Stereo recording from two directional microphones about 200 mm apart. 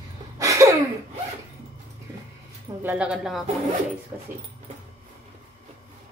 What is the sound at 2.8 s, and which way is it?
Speech, 5° right (ahead or behind).